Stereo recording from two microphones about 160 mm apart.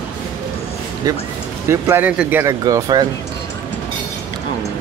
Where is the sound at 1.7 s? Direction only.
15° right (ahead or behind).